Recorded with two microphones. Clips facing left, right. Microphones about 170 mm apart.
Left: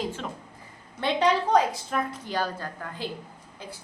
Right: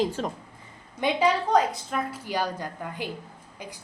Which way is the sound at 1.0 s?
15° right (ahead or behind).